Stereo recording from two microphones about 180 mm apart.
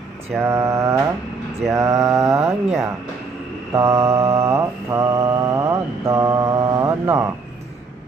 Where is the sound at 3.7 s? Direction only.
15° right (ahead or behind).